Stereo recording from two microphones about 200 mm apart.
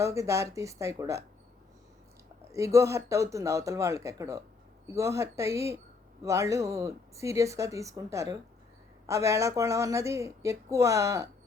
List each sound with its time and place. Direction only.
0.0 s speech: 15° right (ahead or behind)
2.5 s speech: 15° right (ahead or behind)